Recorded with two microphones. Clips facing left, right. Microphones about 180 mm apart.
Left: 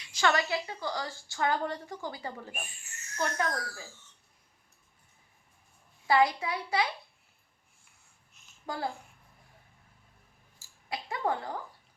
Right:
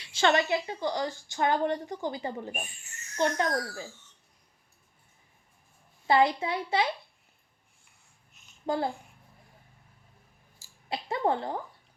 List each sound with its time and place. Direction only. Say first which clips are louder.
0.0 s a woman's voice: right 3 dB; 25° right (ahead or behind)
3.4 s speech: right 4 dB; 35° right (ahead or behind)
6.1 s a woman's voice: right 2 dB; 25° right (ahead or behind)
8.3 s a sound: right 2 dB; centre (ahead or behind)
8.6 s a child's voice: right 6 dB; 25° right (ahead or behind)
10.8 s a woman's voice: right 4 dB; 25° right (ahead or behind)